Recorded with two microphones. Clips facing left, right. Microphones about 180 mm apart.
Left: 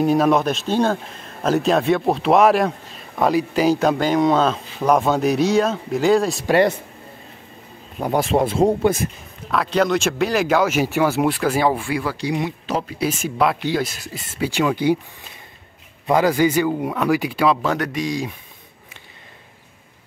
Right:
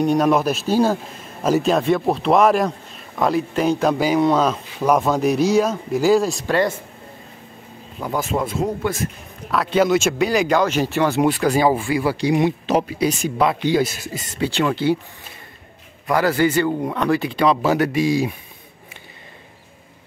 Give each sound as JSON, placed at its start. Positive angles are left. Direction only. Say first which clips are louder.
{"t": 0.0, "sound": "speech", "louder": "even", "side_deg": 0}
{"t": 8.0, "sound": "speech", "louder": "left 4 dB", "side_deg": 30}
{"t": 9.5, "sound": "speech", "louder": "right 2 dB", "side_deg": 0}
{"t": 12.4, "sound": "speech", "louder": "right 6 dB", "side_deg": -25}
{"t": 13.0, "sound": "speech", "louder": "right 1 dB", "side_deg": 5}
{"t": 16.1, "sound": "speech", "louder": "left 1 dB", "side_deg": 15}
{"t": 17.6, "sound": "speech", "louder": "right 4 dB", "side_deg": -5}